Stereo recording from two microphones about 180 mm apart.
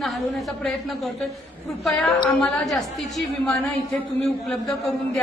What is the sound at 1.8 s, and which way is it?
A woman's voice, centre (ahead or behind).